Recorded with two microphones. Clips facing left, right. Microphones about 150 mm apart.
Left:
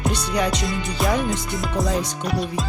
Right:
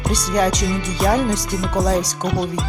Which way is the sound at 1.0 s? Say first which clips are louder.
Right 4 dB; centre (ahead or behind).